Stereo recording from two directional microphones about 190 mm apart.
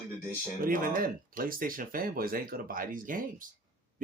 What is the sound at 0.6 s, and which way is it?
Speech, 45° right (ahead or behind).